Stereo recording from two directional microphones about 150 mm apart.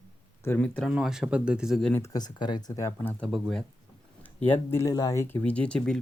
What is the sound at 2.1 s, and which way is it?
Speech, 30° left (ahead or behind).